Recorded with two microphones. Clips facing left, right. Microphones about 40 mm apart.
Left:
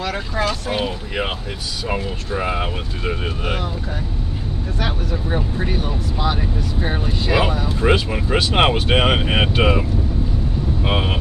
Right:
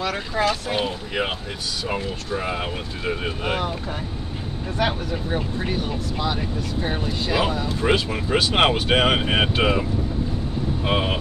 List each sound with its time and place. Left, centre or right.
0.4 s speech: centre
0.8 s speech: centre
2.3 s speech: centre
3.0 s speech: centre
5.8 s speech: centre